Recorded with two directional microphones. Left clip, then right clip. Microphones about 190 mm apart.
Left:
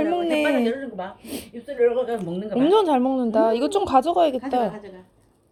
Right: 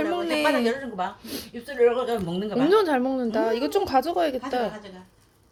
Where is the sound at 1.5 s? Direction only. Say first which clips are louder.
Left 1 dB; 15° right (ahead or behind).